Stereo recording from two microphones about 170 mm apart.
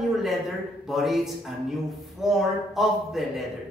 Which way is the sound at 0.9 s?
Centre (ahead or behind).